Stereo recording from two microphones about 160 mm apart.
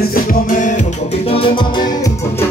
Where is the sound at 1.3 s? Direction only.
35° left (ahead or behind).